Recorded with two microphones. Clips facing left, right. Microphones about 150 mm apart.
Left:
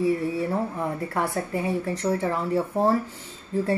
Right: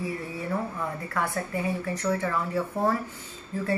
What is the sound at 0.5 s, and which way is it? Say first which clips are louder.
A woman's voice: left 3 dB; 30° left (ahead or behind).